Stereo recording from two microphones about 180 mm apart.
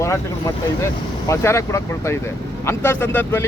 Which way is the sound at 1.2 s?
15° left (ahead or behind).